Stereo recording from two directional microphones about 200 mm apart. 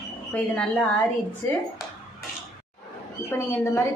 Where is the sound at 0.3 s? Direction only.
5° left (ahead or behind).